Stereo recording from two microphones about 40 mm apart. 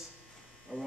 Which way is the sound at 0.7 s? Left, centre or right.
Right.